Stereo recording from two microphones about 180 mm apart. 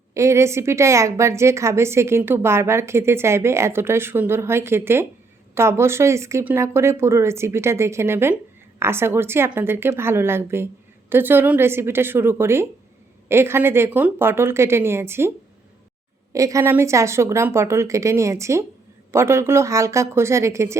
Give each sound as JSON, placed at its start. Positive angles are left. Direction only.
{"t": 0.1, "sound": "a woman's voice", "side_deg": -15}
{"t": 16.3, "sound": "a woman's voice", "side_deg": -15}